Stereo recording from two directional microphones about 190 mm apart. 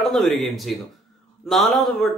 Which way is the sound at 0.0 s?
Centre (ahead or behind).